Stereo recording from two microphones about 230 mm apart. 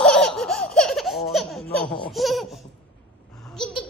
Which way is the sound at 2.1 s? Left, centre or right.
Centre.